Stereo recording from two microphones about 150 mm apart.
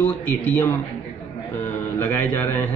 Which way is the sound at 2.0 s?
15° left (ahead or behind).